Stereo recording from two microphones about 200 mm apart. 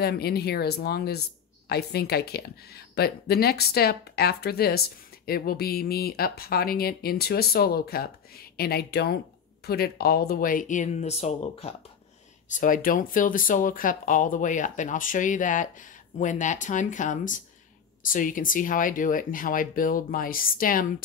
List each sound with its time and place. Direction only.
0.0 s speech: 50° left (ahead or behind)